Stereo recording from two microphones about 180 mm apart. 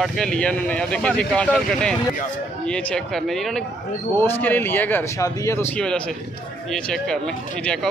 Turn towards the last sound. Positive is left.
turn(degrees=5)  # may be behind; listen again after turning